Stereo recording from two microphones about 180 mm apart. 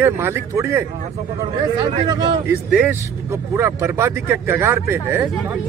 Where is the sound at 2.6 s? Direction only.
5° right (ahead or behind).